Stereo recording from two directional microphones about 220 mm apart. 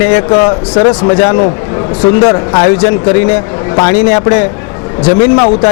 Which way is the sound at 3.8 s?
20° left (ahead or behind).